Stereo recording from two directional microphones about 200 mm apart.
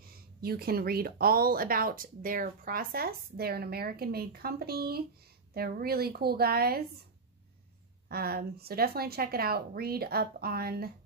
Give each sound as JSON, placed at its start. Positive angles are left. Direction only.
{"t": 0.4, "sound": "speech", "side_deg": -50}
{"t": 8.1, "sound": "speech", "side_deg": -50}